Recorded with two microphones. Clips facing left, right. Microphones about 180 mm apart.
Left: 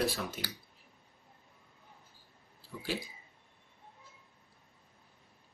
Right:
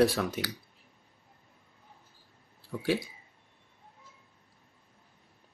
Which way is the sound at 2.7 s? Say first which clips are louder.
Right 9 dB; 70° right (ahead or behind).